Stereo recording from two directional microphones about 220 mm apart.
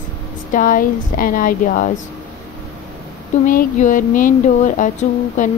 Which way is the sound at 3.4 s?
35° left (ahead or behind).